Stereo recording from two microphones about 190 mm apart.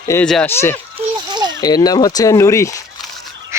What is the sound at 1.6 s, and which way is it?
Speech, 20° left (ahead or behind).